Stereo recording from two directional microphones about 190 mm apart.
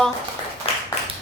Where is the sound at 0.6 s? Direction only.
30° left (ahead or behind).